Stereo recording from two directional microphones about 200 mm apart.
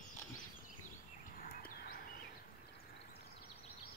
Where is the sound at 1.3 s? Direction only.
45° left (ahead or behind).